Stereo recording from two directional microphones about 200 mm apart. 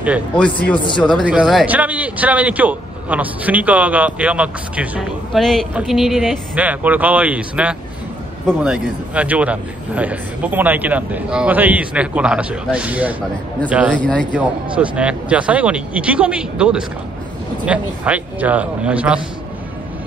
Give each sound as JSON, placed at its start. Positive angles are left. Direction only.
{"t": 0.7, "sound": "speech", "side_deg": 25}
{"t": 1.0, "sound": "a man's voice", "side_deg": 0}
{"t": 13.9, "sound": "speech", "side_deg": 5}
{"t": 14.3, "sound": "a man's voice", "side_deg": -5}